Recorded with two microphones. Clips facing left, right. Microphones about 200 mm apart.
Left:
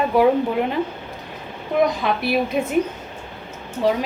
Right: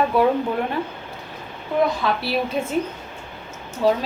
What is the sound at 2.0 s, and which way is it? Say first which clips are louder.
Speech: left 1 dB; 20° left (ahead or behind).